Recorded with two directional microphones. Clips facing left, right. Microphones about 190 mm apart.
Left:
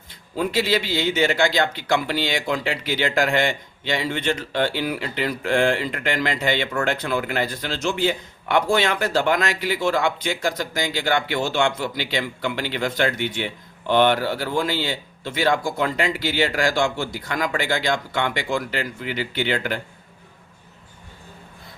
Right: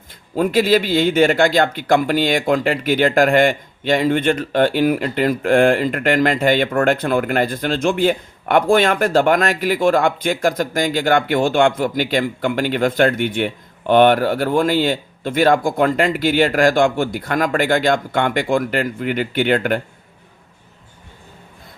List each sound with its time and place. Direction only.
0.1 s speech: 50° right (ahead or behind)